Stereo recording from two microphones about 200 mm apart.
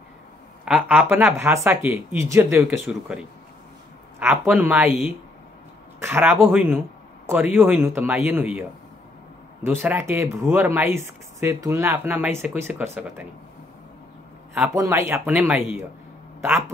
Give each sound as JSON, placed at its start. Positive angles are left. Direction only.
{"t": 0.7, "sound": "speech", "side_deg": -5}
{"t": 14.8, "sound": "speech", "side_deg": -15}